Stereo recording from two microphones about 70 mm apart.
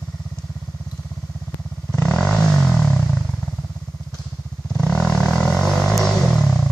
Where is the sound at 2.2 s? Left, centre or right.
Centre.